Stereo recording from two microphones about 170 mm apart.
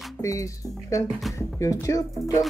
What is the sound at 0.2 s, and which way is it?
Speech, 20° left (ahead or behind).